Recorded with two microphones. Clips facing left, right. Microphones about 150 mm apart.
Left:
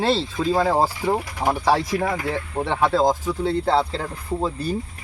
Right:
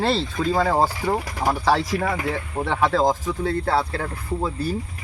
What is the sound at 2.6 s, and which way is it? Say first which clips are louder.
Speech: left 1 dB; 10° right (ahead or behind).